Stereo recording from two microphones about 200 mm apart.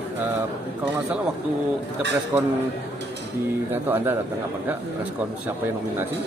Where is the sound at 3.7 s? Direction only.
10° right (ahead or behind).